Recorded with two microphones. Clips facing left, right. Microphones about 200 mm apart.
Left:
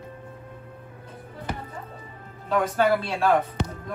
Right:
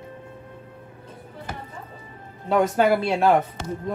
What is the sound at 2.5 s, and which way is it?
Speech, 25° right (ahead or behind).